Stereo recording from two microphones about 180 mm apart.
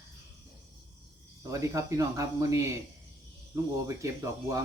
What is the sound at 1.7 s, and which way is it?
Speech, 20° right (ahead or behind).